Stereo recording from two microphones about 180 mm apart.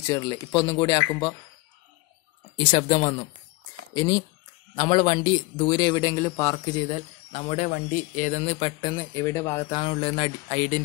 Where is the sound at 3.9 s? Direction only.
20° left (ahead or behind).